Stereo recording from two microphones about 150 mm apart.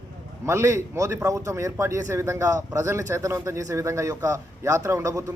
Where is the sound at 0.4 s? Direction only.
20° right (ahead or behind).